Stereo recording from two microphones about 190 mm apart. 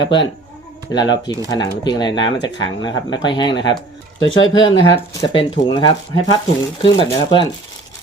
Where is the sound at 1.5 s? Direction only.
20° left (ahead or behind).